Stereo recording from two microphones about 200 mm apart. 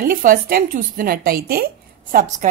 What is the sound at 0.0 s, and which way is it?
A woman's voice, 45° right (ahead or behind).